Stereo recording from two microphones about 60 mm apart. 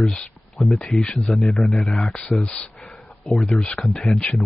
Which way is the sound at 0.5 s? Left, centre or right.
Centre.